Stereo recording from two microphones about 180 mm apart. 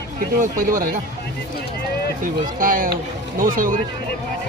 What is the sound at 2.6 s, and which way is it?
Speech, 50° right (ahead or behind).